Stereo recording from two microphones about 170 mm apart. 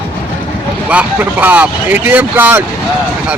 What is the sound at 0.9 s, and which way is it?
Speech, 10° right (ahead or behind).